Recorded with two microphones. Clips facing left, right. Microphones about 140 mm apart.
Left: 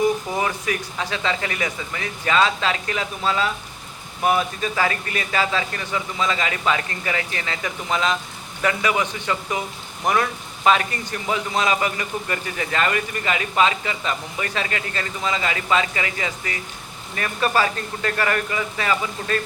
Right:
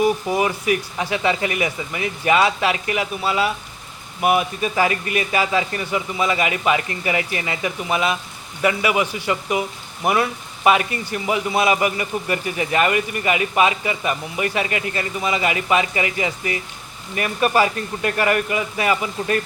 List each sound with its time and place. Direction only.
0.0 s speech: 15° right (ahead or behind)